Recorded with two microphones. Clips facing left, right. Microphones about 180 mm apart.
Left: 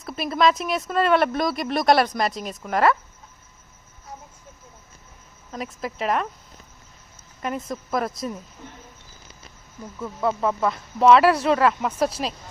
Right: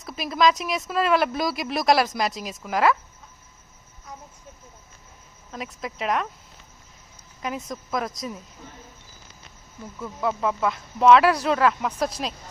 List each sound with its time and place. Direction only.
0.0 s speech: centre (ahead or behind)
5.5 s speech: centre (ahead or behind)
7.4 s speech: centre (ahead or behind)
10.0 s speech: centre (ahead or behind)